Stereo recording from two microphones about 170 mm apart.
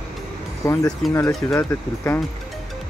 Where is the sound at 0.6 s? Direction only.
20° left (ahead or behind).